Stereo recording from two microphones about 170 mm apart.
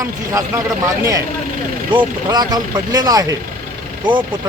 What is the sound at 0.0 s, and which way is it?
Speech, 20° right (ahead or behind).